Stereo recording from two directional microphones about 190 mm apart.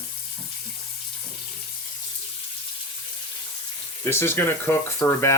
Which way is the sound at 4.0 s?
15° left (ahead or behind).